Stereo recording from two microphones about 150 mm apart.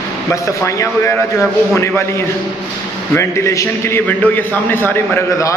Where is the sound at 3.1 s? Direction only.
20° left (ahead or behind).